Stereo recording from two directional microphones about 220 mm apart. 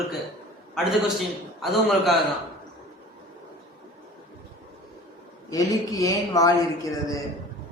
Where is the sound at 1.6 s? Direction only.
Centre (ahead or behind).